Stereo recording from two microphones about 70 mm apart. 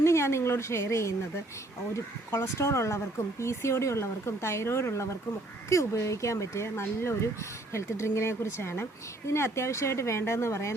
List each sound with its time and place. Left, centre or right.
0.0 s a woman's voice: left